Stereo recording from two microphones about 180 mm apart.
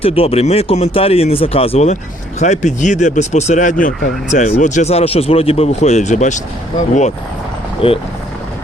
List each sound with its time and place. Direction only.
0.0 s speech: 35° left (ahead or behind)
7.8 s speech: 30° left (ahead or behind)